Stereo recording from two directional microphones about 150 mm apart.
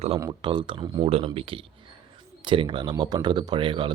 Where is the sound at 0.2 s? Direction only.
30° right (ahead or behind).